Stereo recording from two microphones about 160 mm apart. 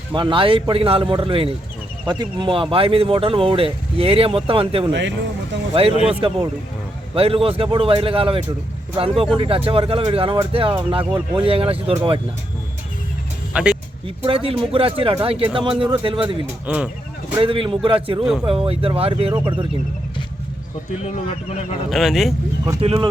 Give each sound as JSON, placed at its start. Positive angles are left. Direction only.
{"t": 0.1, "sound": "speech", "side_deg": -30}
{"t": 6.1, "sound": "speech", "side_deg": -35}
{"t": 13.5, "sound": "speech", "side_deg": -5}
{"t": 14.3, "sound": "speech", "side_deg": -35}
{"t": 16.6, "sound": "speech", "side_deg": -10}
{"t": 17.3, "sound": "speech", "side_deg": -35}
{"t": 21.8, "sound": "speech", "side_deg": 0}
{"t": 22.8, "sound": "speech", "side_deg": -35}